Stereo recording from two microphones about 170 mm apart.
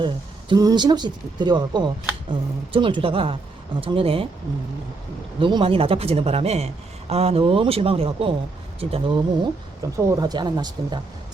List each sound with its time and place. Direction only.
0.0 s speech: 25° right (ahead or behind)
5.4 s speech: 30° right (ahead or behind)